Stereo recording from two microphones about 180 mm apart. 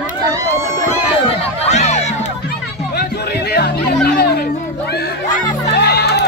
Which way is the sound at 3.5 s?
60° left (ahead or behind).